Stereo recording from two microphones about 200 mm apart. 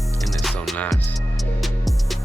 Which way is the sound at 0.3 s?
Centre (ahead or behind).